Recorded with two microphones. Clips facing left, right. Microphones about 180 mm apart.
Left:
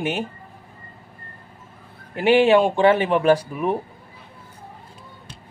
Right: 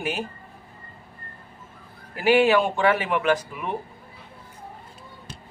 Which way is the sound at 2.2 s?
25° left (ahead or behind).